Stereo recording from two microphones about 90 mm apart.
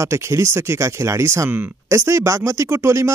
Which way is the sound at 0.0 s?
30° right (ahead or behind).